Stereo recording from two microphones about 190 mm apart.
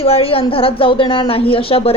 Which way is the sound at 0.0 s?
30° left (ahead or behind).